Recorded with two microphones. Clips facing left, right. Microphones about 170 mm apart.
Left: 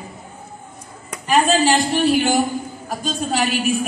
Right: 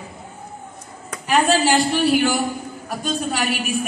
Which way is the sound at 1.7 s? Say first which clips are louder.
Even; 20° left (ahead or behind).